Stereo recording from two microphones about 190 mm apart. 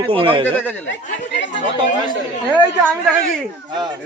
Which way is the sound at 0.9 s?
70° left (ahead or behind).